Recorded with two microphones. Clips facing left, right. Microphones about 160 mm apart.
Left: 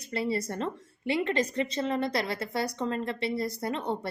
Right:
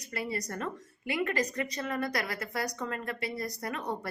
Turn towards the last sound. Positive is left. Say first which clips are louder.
# left 4 dB
turn(degrees=25)  # may be behind; listen again after turning